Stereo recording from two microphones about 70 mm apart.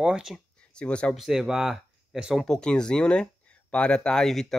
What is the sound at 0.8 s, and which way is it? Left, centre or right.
Speech, centre.